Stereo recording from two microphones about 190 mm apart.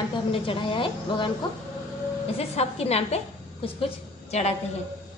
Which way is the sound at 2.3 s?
30° left (ahead or behind).